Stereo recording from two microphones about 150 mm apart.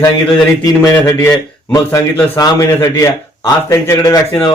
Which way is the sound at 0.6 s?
20° left (ahead or behind).